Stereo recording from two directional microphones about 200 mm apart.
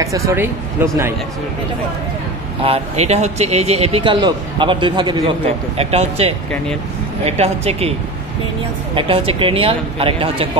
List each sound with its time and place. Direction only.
0.0 s speech: 15° right (ahead or behind)
2.6 s speech: 30° right (ahead or behind)
8.9 s speech: 25° right (ahead or behind)